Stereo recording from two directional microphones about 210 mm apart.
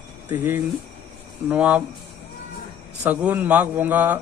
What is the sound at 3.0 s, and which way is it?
Speech, 5° right (ahead or behind).